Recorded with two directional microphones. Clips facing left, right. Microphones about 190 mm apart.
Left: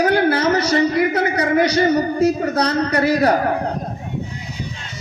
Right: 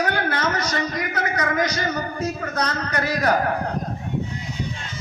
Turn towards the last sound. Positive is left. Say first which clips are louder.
# left 5 dB
turn(degrees=30)  # may be behind; listen again after turning